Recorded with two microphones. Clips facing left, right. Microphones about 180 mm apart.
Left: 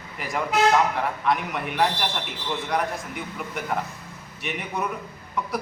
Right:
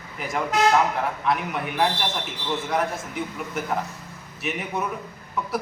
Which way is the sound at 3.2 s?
Centre (ahead or behind).